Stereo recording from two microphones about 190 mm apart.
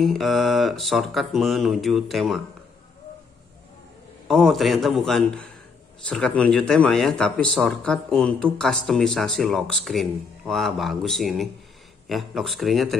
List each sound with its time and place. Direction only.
0.0 s speech: centre (ahead or behind)
4.3 s speech: centre (ahead or behind)